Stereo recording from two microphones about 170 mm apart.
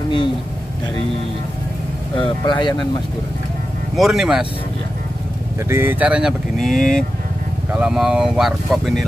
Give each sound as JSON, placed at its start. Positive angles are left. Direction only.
{"t": 2.1, "sound": "speech", "side_deg": 30}
{"t": 3.9, "sound": "speech", "side_deg": 0}
{"t": 5.7, "sound": "speech", "side_deg": -15}